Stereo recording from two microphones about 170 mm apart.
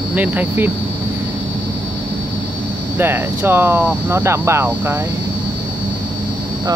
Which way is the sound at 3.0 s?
15° right (ahead or behind).